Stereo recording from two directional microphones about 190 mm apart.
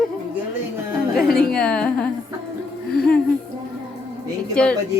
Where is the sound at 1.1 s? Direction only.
Centre (ahead or behind).